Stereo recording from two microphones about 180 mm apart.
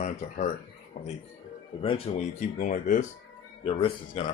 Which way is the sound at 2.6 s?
45° left (ahead or behind).